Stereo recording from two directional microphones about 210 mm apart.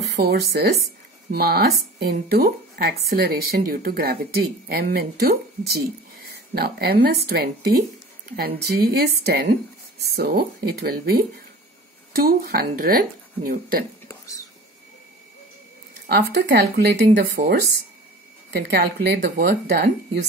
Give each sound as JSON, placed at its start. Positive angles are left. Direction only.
{"t": 0.1, "sound": "speech", "side_deg": -50}
{"t": 14.0, "sound": "whispering", "side_deg": 15}
{"t": 16.1, "sound": "speech", "side_deg": -50}